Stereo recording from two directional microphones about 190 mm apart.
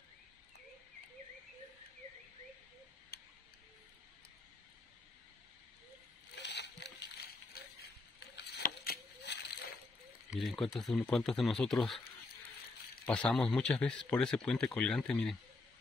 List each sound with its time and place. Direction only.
3.1 s tick-tock: 55° left (ahead or behind)
6.3 s splash: 65° left (ahead or behind)
7.5 s a sound: 55° left (ahead or behind)
10.3 s speech: centre (ahead or behind)
13.0 s speech: 5° left (ahead or behind)